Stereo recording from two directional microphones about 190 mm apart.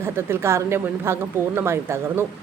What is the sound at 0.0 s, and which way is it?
A woman's voice, 10° right (ahead or behind).